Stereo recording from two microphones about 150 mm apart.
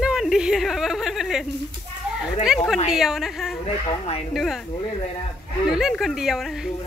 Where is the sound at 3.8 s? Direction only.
40° left (ahead or behind).